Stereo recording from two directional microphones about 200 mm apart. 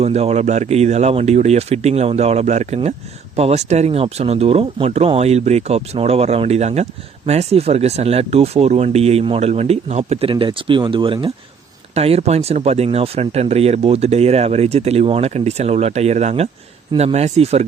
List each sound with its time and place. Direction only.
0.0 s speech: 30° right (ahead or behind)